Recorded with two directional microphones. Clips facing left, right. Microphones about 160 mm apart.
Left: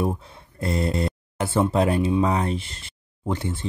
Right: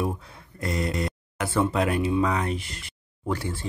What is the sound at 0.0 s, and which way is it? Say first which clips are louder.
Speech: left 3 dB; 25° left (ahead or behind).